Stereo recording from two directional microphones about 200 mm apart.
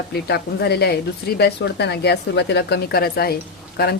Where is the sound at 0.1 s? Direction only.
55° left (ahead or behind).